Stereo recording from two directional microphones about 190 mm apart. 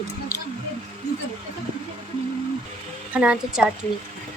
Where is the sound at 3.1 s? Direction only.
5° right (ahead or behind).